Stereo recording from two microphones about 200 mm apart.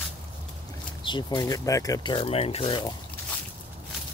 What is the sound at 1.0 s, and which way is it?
Speech, 25° left (ahead or behind).